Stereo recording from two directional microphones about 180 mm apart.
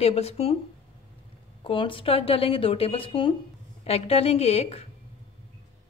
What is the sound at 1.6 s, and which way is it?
Speech, 30° left (ahead or behind).